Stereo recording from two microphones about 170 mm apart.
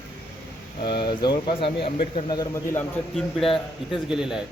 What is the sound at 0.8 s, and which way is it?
Speech, 30° left (ahead or behind).